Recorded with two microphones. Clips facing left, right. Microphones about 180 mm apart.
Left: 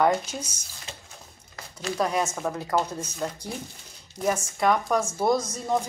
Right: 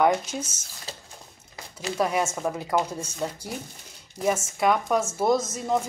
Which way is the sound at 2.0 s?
5° right (ahead or behind).